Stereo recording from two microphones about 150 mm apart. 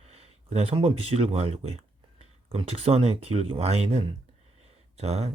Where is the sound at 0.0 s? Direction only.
45° right (ahead or behind).